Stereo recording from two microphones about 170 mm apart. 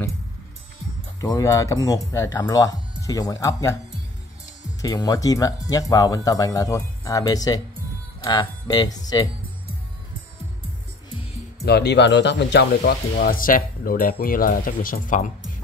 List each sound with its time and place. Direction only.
1.2 s speech: 20° left (ahead or behind)
4.8 s speech: 20° left (ahead or behind)
11.6 s speech: 80° left; by 15.3 s 50° left (ahead or behind)